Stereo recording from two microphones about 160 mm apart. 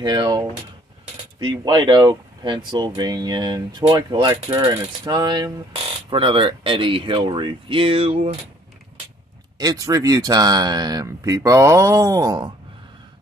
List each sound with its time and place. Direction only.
0.0 s speech: 25° right (ahead or behind)
9.6 s speech: 20° right (ahead or behind)